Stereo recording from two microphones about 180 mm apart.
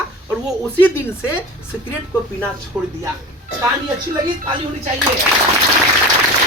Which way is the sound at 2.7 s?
10° right (ahead or behind).